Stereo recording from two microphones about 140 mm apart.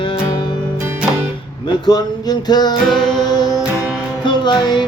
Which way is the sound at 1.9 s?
30° left (ahead or behind).